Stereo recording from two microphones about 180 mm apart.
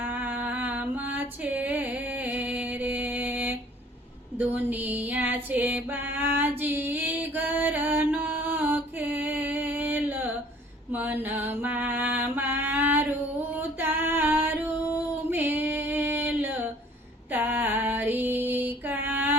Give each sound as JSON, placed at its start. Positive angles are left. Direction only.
{"t": 0.0, "sound": "a sound", "side_deg": -10}
{"t": 10.9, "sound": "music", "side_deg": -10}
{"t": 13.6, "sound": "female singing", "side_deg": -10}